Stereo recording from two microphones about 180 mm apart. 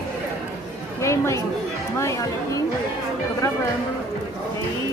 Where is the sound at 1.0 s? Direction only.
15° left (ahead or behind).